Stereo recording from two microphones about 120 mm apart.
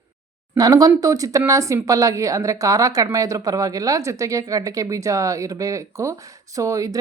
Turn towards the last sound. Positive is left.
turn(degrees=-30)  # may be behind; listen again after turning